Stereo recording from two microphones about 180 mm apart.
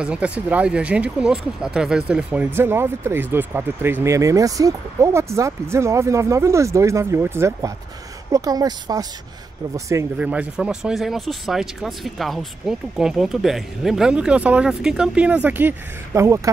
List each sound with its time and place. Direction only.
0.0 s speech: 5° right (ahead or behind)
10.1 s speech: 5° right (ahead or behind)